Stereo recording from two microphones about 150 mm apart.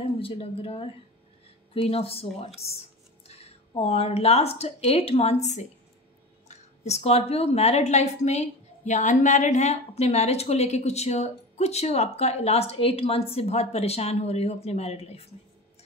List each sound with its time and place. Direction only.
0.2 s a woman's voice: 40° left (ahead or behind)